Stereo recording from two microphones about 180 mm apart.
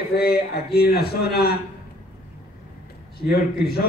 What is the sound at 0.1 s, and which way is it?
A man's voice, 60° left (ahead or behind).